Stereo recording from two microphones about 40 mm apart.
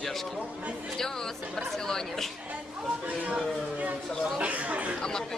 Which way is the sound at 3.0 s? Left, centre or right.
Right.